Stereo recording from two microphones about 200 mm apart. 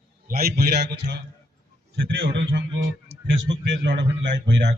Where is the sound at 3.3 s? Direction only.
65° right (ahead or behind).